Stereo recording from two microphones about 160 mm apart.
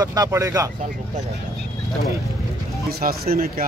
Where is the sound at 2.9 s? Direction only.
70° right (ahead or behind).